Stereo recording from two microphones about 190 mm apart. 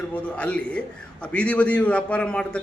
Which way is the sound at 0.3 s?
5° left (ahead or behind).